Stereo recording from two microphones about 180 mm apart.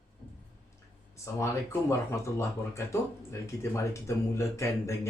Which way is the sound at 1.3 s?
15° left (ahead or behind).